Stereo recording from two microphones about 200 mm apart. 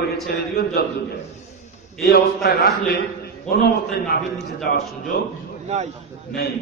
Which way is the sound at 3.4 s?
50° left (ahead or behind).